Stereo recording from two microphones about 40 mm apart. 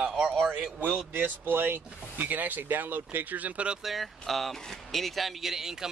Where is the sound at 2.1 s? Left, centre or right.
Right.